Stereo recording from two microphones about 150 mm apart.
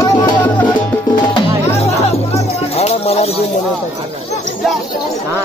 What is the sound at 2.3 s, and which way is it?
Music, 45° left (ahead or behind).